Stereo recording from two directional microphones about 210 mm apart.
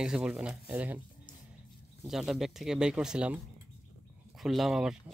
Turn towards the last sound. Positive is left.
turn(degrees=0)  # may be behind; listen again after turning